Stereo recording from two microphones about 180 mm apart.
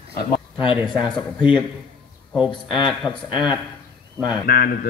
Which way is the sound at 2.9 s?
Centre (ahead or behind).